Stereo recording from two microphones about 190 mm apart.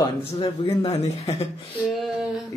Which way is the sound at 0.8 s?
35° left (ahead or behind).